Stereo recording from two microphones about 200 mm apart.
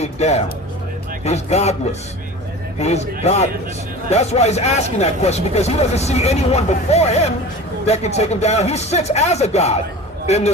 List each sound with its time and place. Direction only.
0.0 s speech: 35° left (ahead or behind)